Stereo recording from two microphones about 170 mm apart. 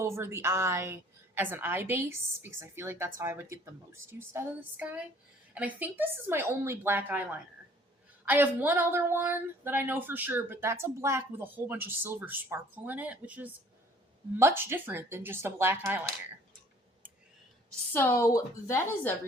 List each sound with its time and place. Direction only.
0.0 s speech: 15° right (ahead or behind)
17.9 s a woman's voice: 15° left (ahead or behind)